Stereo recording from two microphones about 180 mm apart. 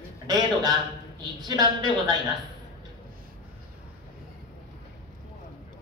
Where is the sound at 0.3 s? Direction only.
20° right (ahead or behind).